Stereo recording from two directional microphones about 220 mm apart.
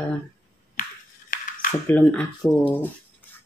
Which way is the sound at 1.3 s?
40° left (ahead or behind).